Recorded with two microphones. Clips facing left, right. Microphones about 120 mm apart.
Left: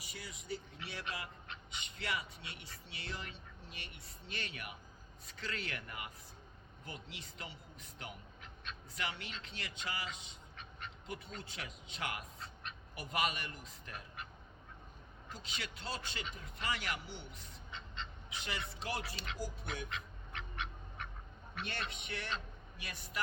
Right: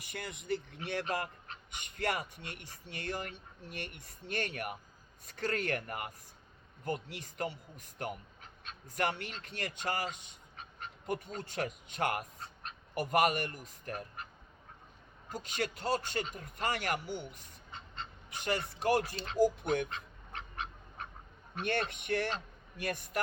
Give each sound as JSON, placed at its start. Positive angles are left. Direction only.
{"t": 0.0, "sound": "speech", "side_deg": -60}
{"t": 15.3, "sound": "speech", "side_deg": -50}
{"t": 19.1, "sound": "speech", "side_deg": -40}
{"t": 19.6, "sound": "speech", "side_deg": -55}
{"t": 19.9, "sound": "duck", "side_deg": -35}
{"t": 21.5, "sound": "speech", "side_deg": -45}